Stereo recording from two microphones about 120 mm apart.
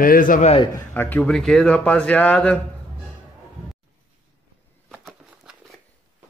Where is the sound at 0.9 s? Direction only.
15° left (ahead or behind).